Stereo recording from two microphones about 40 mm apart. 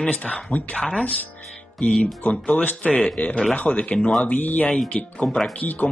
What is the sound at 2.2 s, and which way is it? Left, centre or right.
Speech, left.